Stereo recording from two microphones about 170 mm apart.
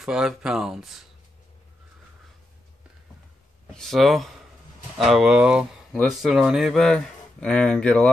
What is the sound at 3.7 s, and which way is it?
Speech, centre (ahead or behind).